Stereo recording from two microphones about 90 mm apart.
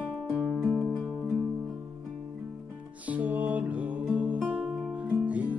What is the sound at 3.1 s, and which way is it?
Music, 15° right (ahead or behind).